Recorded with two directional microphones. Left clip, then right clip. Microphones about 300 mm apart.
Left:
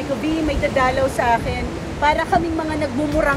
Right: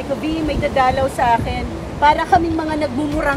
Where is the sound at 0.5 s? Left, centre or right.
Centre.